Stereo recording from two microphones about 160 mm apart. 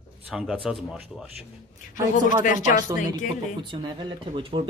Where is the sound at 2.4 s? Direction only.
55° left (ahead or behind).